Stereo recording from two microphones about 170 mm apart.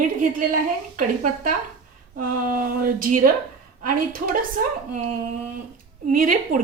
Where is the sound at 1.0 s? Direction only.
55° right (ahead or behind).